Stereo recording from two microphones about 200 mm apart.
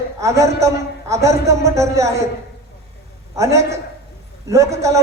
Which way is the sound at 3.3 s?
15° right (ahead or behind).